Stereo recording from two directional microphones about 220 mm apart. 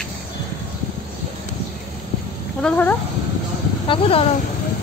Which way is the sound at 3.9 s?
25° left (ahead or behind).